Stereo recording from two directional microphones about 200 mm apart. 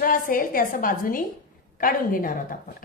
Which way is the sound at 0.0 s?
45° left (ahead or behind).